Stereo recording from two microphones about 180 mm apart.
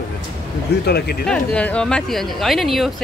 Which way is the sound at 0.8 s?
65° left (ahead or behind).